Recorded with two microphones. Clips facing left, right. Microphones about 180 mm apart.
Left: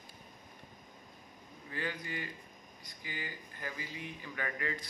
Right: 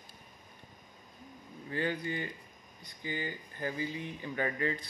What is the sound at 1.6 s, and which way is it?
Speech, 30° right (ahead or behind).